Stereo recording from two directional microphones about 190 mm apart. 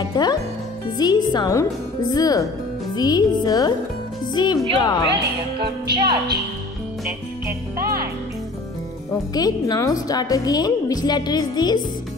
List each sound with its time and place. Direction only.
0.1 s a woman's voice: 20° left (ahead or behind)
5.9 s speech: 55° right (ahead or behind)
7.7 s speech: 50° right (ahead or behind)
9.3 s a woman's voice: 20° left (ahead or behind)